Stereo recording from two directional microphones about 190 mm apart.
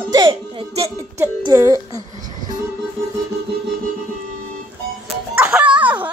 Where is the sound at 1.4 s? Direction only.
20° right (ahead or behind).